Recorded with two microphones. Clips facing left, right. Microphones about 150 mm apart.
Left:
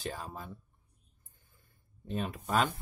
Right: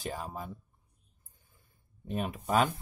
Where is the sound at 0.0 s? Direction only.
10° right (ahead or behind).